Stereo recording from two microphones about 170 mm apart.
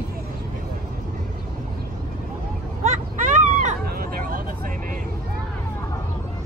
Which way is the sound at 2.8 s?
45° right (ahead or behind).